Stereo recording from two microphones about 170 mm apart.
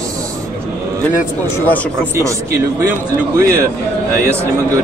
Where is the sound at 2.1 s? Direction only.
20° right (ahead or behind).